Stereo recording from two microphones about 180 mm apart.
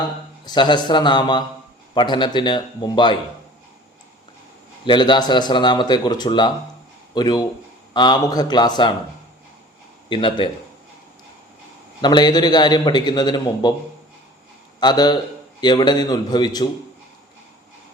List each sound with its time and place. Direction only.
0.4 s a man's voice: 25° left (ahead or behind)
4.9 s a man's voice: 25° left (ahead or behind)
10.1 s a man's voice: 30° left (ahead or behind)
12.0 s a man's voice: 25° left (ahead or behind)
14.8 s a man's voice: 25° left (ahead or behind)